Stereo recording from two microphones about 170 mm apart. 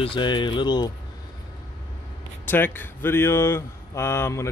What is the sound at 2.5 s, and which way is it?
Speech, 10° left (ahead or behind).